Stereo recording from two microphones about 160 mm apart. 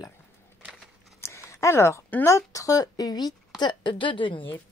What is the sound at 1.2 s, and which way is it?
A woman's voice, 20° left (ahead or behind).